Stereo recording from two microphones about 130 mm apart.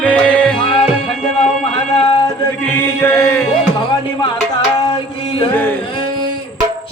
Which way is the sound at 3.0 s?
20° left (ahead or behind).